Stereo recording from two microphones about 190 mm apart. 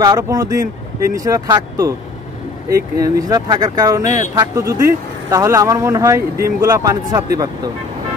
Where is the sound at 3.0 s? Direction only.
20° right (ahead or behind).